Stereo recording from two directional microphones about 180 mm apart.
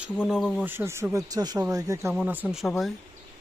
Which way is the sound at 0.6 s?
15° right (ahead or behind).